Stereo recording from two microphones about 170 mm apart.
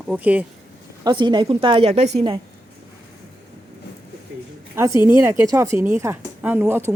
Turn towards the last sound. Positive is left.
turn(degrees=-15)  # may be behind; listen again after turning